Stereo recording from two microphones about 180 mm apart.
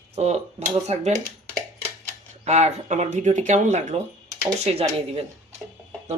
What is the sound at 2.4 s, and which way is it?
Speech, 40° right (ahead or behind).